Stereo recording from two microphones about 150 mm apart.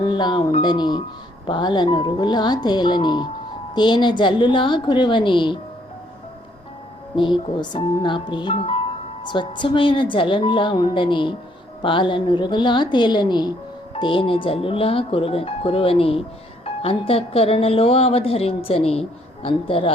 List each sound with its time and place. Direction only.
0.0 s a woman's voice: 30° left (ahead or behind)
7.2 s a woman's voice: 30° left (ahead or behind)